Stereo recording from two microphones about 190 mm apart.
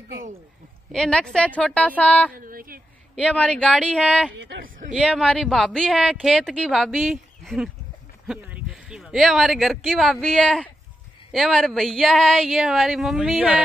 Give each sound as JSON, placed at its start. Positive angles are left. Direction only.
{"t": 0.9, "sound": "speech", "side_deg": 5}
{"t": 2.0, "sound": "mantra", "side_deg": 10}
{"t": 2.3, "sound": "a sound", "side_deg": -50}
{"t": 3.2, "sound": "speech", "side_deg": 5}
{"t": 4.4, "sound": "a sound", "side_deg": -45}
{"t": 4.9, "sound": "speech", "side_deg": 0}